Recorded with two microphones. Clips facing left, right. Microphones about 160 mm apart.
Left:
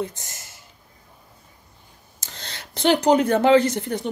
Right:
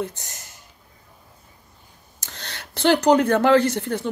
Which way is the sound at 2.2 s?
15° left (ahead or behind).